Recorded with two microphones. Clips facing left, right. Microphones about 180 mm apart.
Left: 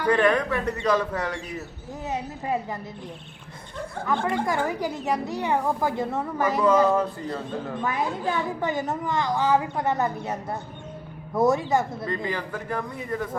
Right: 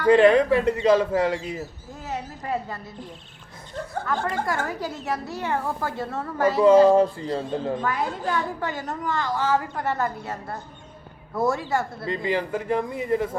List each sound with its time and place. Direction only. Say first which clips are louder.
0.1 s speech: right 6 dB; 25° right (ahead or behind)
2.0 s a woman's voice: left 1 dB; 15° left (ahead or behind)
4.0 s a woman's voice: left 2 dB; 15° left (ahead or behind)
6.6 s speech: right 6 dB; 30° right (ahead or behind)
7.8 s a woman's voice: even; 15° left (ahead or behind)
12.0 s speech: right 3 dB; 25° right (ahead or behind)